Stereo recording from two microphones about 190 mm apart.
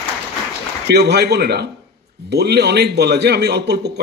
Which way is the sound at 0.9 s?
60° right (ahead or behind).